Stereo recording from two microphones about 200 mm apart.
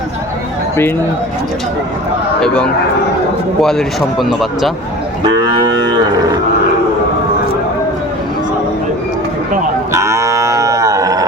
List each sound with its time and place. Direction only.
3.6 s speech: centre (ahead or behind)
5.2 s moo: 20° right (ahead or behind)
9.9 s cattle: 15° right (ahead or behind)